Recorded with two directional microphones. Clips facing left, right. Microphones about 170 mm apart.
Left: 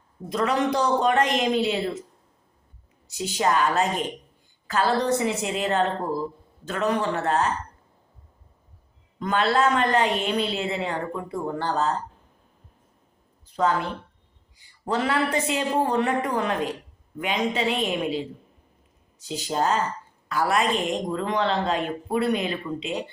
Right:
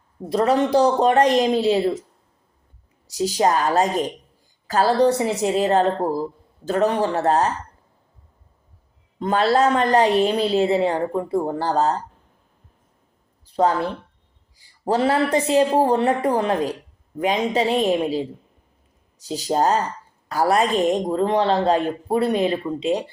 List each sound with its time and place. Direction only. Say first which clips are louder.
0.3 s a woman's voice: right 5 dB; 35° right (ahead or behind)
3.2 s a woman's voice: right 4 dB; 35° right (ahead or behind)
9.1 s a woman's voice: right 4 dB; 35° right (ahead or behind)
13.4 s a sound: right 4 dB; 35° right (ahead or behind)
14.5 s a woman's voice: right 5 dB; 35° right (ahead or behind)
19.2 s a woman's voice: right 5 dB; 35° right (ahead or behind)